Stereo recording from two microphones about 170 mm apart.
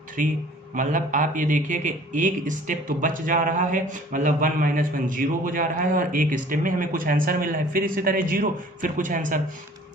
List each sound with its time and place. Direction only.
0.2 s a man's voice: 50° right (ahead or behind)